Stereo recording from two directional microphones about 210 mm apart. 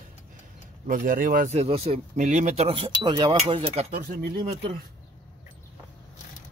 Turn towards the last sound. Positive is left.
turn(degrees=-45)  # may be behind; listen again after turning